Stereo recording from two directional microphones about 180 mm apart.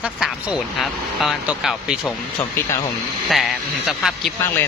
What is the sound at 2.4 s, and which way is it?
Speech, 15° left (ahead or behind).